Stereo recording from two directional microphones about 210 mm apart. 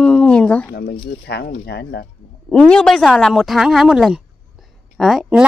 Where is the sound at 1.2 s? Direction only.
50° left (ahead or behind).